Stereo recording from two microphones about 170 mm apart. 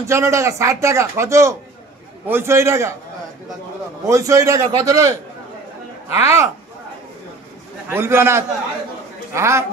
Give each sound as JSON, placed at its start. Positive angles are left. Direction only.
{"t": 0.0, "sound": "speech", "side_deg": -15}
{"t": 4.1, "sound": "a man's voice", "side_deg": -20}
{"t": 7.9, "sound": "speech", "side_deg": -15}